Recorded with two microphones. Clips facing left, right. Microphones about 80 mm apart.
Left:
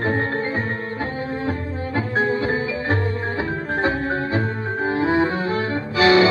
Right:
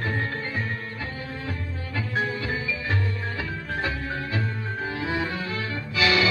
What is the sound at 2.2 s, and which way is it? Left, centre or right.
Music, left.